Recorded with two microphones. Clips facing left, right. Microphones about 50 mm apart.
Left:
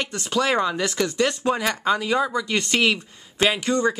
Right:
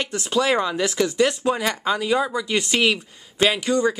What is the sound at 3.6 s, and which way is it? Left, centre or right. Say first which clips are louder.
Speech: right 1 dB; centre.